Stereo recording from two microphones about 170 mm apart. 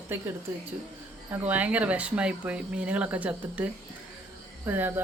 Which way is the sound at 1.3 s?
10° right (ahead or behind).